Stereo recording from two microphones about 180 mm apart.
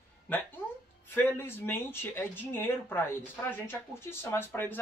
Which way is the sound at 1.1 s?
10° left (ahead or behind).